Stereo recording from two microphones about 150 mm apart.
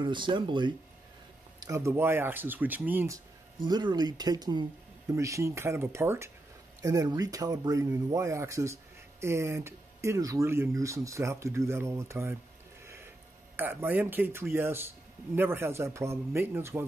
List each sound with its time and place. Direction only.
0.0 s speech: 30° right (ahead or behind)
1.6 s speech: 20° right (ahead or behind)
3.6 s speech: 30° right (ahead or behind)
12.8 s a sound: 15° right (ahead or behind)
13.6 s speech: 15° right (ahead or behind)